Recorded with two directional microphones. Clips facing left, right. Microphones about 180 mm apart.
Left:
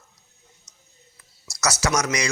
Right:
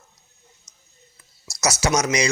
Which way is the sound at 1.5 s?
25° right (ahead or behind).